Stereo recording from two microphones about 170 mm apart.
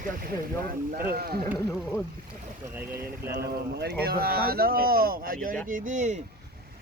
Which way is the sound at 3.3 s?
75° right (ahead or behind).